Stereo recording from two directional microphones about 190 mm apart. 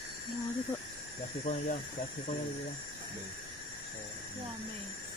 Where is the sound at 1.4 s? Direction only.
40° left (ahead or behind).